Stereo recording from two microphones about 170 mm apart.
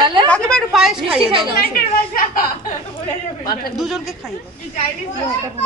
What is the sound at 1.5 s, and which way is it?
Speech, 60° left (ahead or behind).